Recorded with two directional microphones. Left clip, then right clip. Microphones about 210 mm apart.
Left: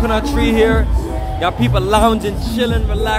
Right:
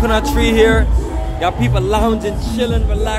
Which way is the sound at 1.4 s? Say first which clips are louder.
Even; 10° left (ahead or behind).